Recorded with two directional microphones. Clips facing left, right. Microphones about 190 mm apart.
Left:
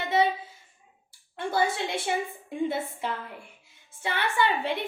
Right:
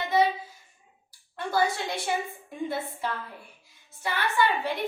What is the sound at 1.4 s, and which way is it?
A woman's voice, 25° left (ahead or behind).